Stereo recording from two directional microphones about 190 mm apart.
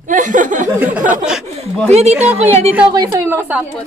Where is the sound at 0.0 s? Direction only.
40° right (ahead or behind).